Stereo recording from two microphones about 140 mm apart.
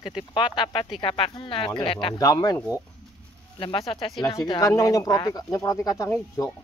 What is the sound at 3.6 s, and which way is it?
Speech, 40° left (ahead or behind).